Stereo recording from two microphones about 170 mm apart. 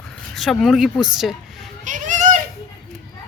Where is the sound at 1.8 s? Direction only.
50° right (ahead or behind).